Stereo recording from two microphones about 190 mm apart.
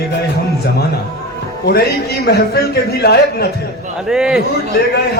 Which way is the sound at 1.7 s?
55° left (ahead or behind).